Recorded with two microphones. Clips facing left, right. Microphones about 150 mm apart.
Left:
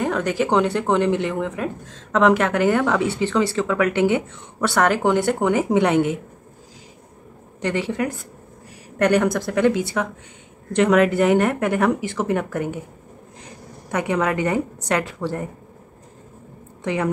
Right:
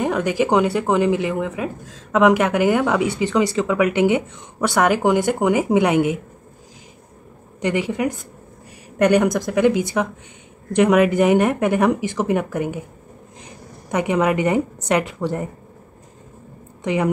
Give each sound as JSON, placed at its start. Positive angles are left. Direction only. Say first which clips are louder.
{"t": 0.0, "sound": "speech", "louder": "right 2 dB", "side_deg": -15}
{"t": 7.6, "sound": "speech", "louder": "right 2 dB", "side_deg": -15}
{"t": 13.8, "sound": "speech", "louder": "right 3 dB", "side_deg": -20}
{"t": 16.8, "sound": "speech", "louder": "right 3 dB", "side_deg": -15}